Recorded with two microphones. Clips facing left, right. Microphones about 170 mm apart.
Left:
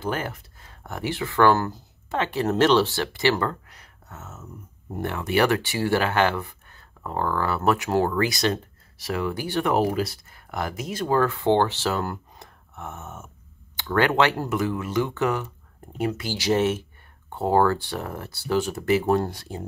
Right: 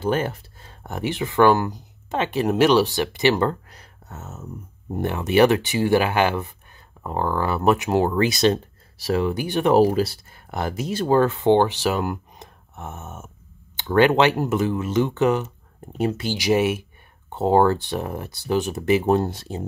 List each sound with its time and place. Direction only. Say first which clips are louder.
0.0 s speech: right 6 dB; 25° right (ahead or behind)
3.6 s a sound: right 4 dB; 35° right (ahead or behind)
4.9 s speech: right 5 dB; 20° right (ahead or behind)
9.8 s speech: right 6 dB; 30° right (ahead or behind)
16.3 s speech: right 1 dB; 10° right (ahead or behind)
17.3 s speech: right 3 dB; 20° right (ahead or behind)